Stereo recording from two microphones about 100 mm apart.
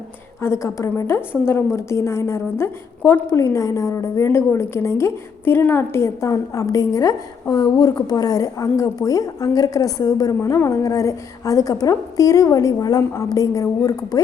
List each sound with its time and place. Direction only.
0.4 s a woman's voice: 30° left (ahead or behind)